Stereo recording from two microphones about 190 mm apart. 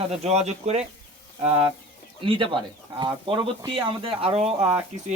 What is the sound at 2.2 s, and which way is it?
Speech, 25° right (ahead or behind).